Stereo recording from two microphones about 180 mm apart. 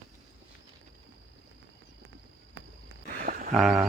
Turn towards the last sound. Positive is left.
turn(degrees=0)  # may be behind; listen again after turning